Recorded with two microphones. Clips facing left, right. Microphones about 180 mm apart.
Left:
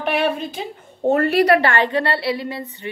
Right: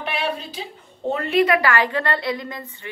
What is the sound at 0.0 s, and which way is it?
A woman's voice, 55° left (ahead or behind).